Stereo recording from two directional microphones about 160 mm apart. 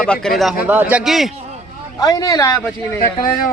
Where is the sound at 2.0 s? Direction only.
25° left (ahead or behind).